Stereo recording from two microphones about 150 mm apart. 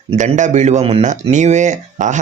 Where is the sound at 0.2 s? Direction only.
55° right (ahead or behind).